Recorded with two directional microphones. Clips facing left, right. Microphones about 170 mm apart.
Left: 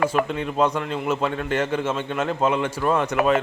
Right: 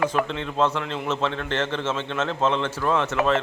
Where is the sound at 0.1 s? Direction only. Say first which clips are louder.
Left 2 dB; 10° left (ahead or behind).